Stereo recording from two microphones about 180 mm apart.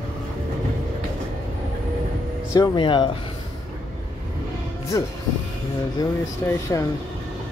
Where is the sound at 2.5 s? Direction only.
25° left (ahead or behind).